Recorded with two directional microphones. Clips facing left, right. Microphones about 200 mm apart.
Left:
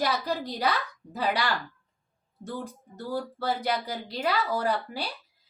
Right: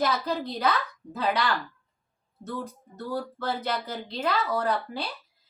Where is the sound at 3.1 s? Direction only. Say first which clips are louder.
Left 1 dB; 10° left (ahead or behind).